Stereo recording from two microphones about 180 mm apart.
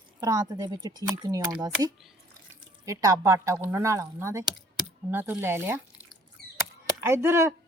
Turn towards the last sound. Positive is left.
turn(degrees=-15)  # may be behind; listen again after turning